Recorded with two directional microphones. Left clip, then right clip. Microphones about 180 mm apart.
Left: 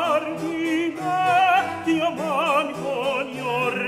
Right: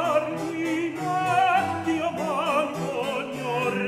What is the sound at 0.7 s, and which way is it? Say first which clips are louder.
Music: left 4 dB; 30° left (ahead or behind).